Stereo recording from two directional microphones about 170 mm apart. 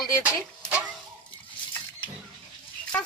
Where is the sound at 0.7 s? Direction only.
10° right (ahead or behind).